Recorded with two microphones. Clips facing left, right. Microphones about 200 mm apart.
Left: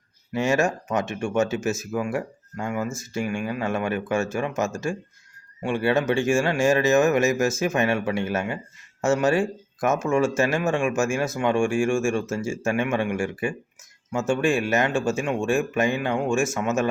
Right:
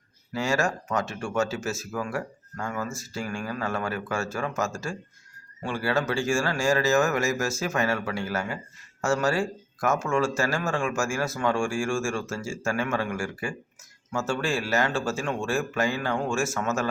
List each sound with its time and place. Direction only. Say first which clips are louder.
0.3 s speech: left 4 dB; 20° left (ahead or behind)